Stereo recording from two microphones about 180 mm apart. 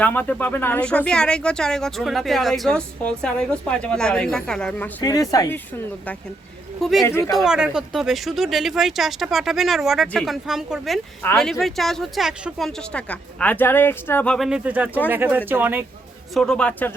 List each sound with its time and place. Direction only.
0.0 s speech: 10° left (ahead or behind)
5.0 s speech: 20° left (ahead or behind)
7.0 s speech: 15° left (ahead or behind)
7.3 s speech: centre (ahead or behind)
14.3 s speech: 5° right (ahead or behind)
16.3 s speech: centre (ahead or behind)